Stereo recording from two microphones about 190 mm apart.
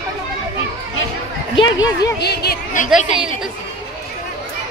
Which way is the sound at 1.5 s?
20° left (ahead or behind).